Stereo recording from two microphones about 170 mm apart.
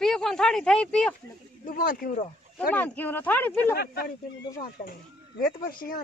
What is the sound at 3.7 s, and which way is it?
Speech, 70° left (ahead or behind).